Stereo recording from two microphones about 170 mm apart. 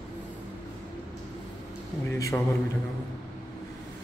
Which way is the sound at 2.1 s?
20° left (ahead or behind).